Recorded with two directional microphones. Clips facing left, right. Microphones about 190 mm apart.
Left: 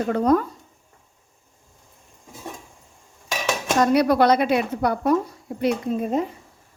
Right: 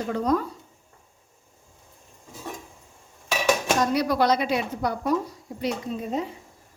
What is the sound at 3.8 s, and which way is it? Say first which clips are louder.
Speech: left 5 dB; 60° left (ahead or behind).